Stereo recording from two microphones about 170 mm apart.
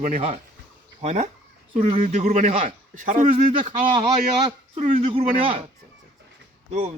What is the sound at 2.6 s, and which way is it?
Speech, 50° right (ahead or behind).